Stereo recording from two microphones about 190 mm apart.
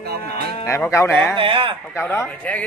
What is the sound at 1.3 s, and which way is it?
Speech, 25° right (ahead or behind).